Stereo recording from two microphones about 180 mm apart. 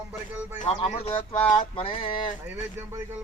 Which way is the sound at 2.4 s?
15° right (ahead or behind).